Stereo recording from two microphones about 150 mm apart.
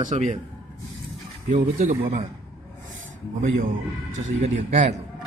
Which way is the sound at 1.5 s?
50° right (ahead or behind).